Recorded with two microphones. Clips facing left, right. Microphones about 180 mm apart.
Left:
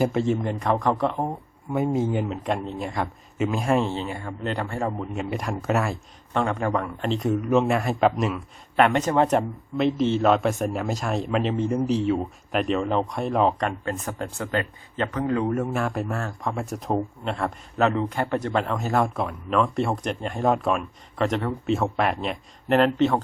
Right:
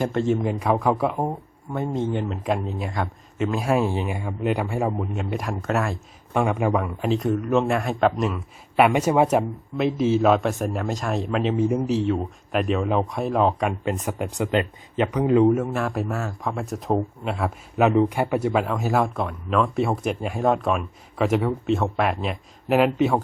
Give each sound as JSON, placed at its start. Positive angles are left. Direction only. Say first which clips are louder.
{"t": 0.0, "sound": "a man's voice", "louder": "even", "side_deg": 0}
{"t": 1.7, "sound": "a man's voice", "louder": "left 2 dB", "side_deg": 10}
{"t": 6.3, "sound": "a man's voice", "louder": "right 3 dB", "side_deg": -10}
{"t": 15.5, "sound": "a man's voice", "louder": "right 1 dB", "side_deg": 0}
{"t": 17.8, "sound": "a man's voice", "louder": "right 4 dB", "side_deg": -15}